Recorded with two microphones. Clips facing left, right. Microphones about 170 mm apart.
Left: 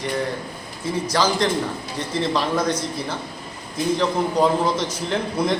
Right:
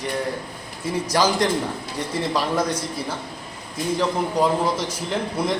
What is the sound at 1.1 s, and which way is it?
A man's voice, 15° right (ahead or behind).